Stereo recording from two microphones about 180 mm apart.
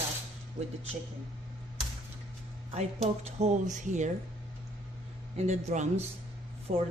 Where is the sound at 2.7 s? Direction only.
35° right (ahead or behind).